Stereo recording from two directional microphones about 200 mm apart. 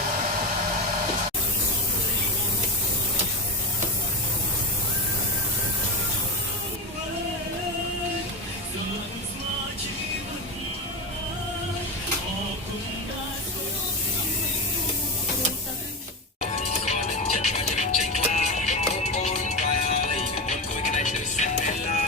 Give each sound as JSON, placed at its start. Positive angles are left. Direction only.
{"t": 16.6, "sound": "music", "side_deg": 35}